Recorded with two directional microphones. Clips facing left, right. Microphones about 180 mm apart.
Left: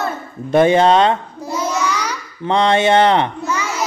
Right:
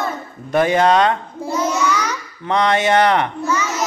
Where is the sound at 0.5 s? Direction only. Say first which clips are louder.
Left 3 dB; 25° left (ahead or behind).